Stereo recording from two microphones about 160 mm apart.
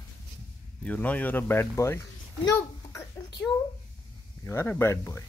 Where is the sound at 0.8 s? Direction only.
10° left (ahead or behind).